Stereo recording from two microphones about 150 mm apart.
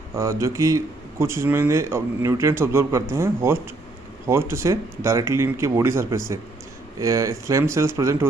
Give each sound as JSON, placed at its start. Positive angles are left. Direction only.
{"t": 0.1, "sound": "speech", "side_deg": -20}